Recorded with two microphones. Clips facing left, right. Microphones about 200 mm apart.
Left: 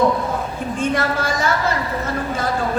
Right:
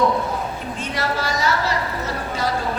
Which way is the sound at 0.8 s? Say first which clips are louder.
Left 5 dB; 50° left (ahead or behind).